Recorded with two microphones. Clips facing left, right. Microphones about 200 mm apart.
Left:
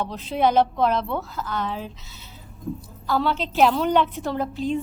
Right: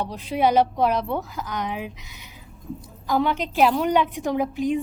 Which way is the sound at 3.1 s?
15° right (ahead or behind).